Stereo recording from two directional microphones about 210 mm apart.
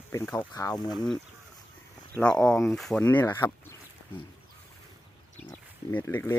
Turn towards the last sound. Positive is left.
turn(degrees=10)  # may be behind; listen again after turning